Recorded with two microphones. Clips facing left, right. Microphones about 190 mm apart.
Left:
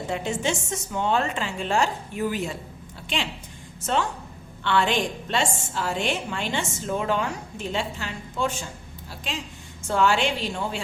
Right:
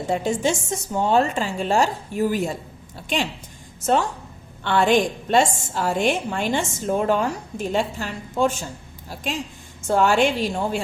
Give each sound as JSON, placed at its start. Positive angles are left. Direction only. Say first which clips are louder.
{"t": 0.1, "sound": "a woman's voice", "louder": "right 5 dB", "side_deg": -40}
{"t": 4.6, "sound": "a woman's voice", "louder": "right 5 dB", "side_deg": -45}